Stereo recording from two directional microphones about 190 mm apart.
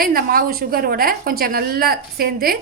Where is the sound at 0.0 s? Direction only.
50° right (ahead or behind).